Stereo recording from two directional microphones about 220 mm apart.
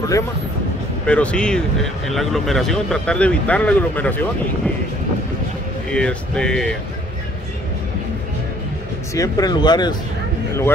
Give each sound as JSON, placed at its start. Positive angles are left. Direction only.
{"t": 1.0, "sound": "speech", "side_deg": 5}
{"t": 5.9, "sound": "speech", "side_deg": 5}
{"t": 9.1, "sound": "speech", "side_deg": 15}